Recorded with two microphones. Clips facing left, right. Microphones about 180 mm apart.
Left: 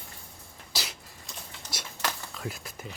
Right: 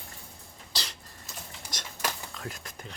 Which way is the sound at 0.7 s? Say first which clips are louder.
Left 2 dB; 10° left (ahead or behind).